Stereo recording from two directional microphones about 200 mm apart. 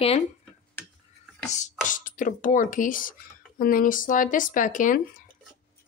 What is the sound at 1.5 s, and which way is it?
Music, 35° left (ahead or behind).